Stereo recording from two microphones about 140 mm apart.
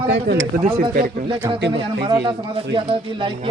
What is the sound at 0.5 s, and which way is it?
Speech, 90° right.